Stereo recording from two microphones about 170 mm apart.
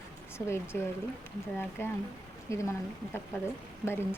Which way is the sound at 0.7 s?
10° left (ahead or behind).